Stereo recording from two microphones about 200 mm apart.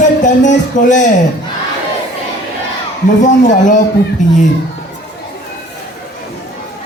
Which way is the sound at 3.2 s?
40° left (ahead or behind).